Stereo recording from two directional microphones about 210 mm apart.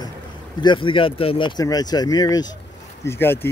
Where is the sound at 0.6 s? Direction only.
25° left (ahead or behind).